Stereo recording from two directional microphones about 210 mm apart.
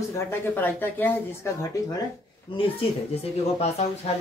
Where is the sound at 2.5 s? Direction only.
25° left (ahead or behind).